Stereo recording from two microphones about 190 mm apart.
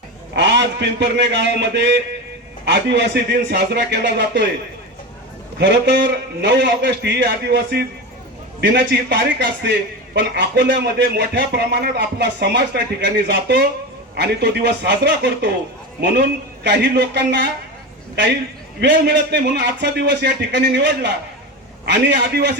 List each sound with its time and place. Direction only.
0.3 s speech: 65° right (ahead or behind)
5.5 s a man's voice: 65° right (ahead or behind)
18.8 s speech: 65° right (ahead or behind)